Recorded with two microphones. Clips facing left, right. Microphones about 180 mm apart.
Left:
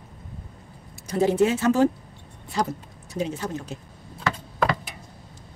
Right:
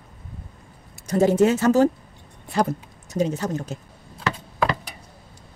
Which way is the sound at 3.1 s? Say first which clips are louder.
Right 5 dB; 40° right (ahead or behind).